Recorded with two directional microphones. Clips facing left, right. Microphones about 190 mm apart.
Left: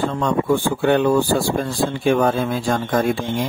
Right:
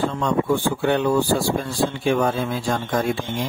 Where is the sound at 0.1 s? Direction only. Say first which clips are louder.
Left 2 dB; 55° left (ahead or behind).